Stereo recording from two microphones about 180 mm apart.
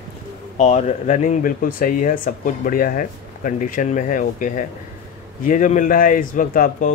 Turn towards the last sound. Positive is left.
turn(degrees=50)  # may be behind; listen again after turning